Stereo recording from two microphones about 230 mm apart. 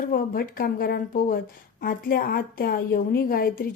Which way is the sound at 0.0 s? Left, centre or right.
Left.